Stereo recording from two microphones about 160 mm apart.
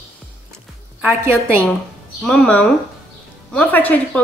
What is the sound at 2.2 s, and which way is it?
A woman's voice, 5° left (ahead or behind).